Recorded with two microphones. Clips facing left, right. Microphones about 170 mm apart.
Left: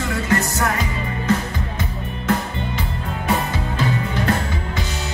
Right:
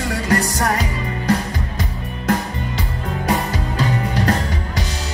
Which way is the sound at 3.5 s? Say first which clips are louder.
Right 1 dB; 40° right (ahead or behind).